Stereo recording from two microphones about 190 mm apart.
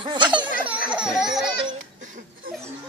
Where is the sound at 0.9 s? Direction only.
5° right (ahead or behind).